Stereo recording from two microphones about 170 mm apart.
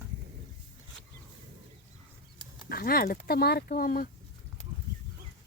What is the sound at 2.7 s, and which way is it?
Speech, 60° left (ahead or behind).